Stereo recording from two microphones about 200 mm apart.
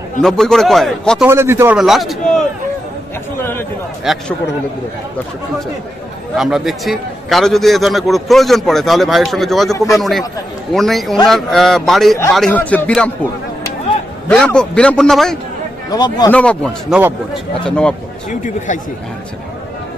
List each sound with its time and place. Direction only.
0.2 s a man's voice: centre (ahead or behind)
1.2 s a man's voice: 10° right (ahead or behind)
1.8 s a man's voice: centre (ahead or behind)
4.0 s a man's voice: centre (ahead or behind)
6.3 s a man's voice: centre (ahead or behind)
14.3 s a man's voice: 5° left (ahead or behind)
15.9 s speech: 20° left (ahead or behind)
16.3 s a man's voice: 5° left (ahead or behind)
18.3 s speech: 40° left (ahead or behind)